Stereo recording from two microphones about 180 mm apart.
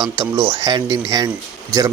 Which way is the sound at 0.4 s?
20° right (ahead or behind).